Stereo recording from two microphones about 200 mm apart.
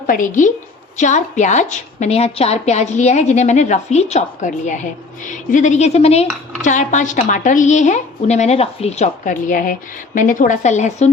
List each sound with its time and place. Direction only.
0.1 s a woman's voice: 40° left (ahead or behind)